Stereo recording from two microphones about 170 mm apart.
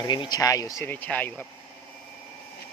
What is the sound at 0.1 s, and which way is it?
Speech, 25° left (ahead or behind).